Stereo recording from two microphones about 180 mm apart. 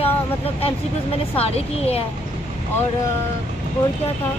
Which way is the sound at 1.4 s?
35° left (ahead or behind).